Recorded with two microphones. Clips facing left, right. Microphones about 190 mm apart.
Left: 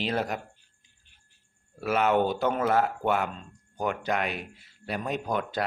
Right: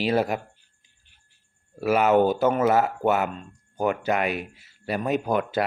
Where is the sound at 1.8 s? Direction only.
10° right (ahead or behind).